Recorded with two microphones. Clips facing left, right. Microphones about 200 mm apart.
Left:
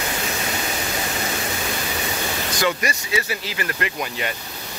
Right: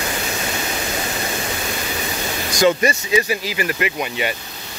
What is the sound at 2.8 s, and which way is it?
Speech, 20° right (ahead or behind).